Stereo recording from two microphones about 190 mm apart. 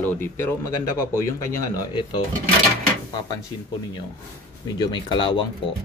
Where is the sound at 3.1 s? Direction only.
20° left (ahead or behind).